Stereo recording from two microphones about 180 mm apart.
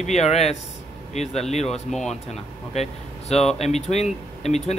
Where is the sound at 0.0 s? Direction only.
40° left (ahead or behind).